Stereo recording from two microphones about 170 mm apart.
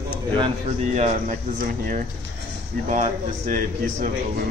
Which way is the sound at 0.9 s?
40° right (ahead or behind).